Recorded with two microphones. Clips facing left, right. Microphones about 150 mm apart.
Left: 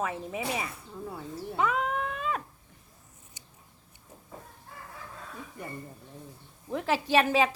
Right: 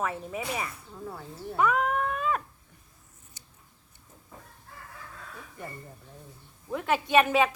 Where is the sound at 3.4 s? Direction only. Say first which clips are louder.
Left 2 dB; 15° left (ahead or behind).